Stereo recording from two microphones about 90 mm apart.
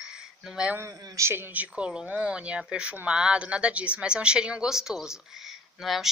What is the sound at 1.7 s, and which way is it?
Speech, 10° right (ahead or behind).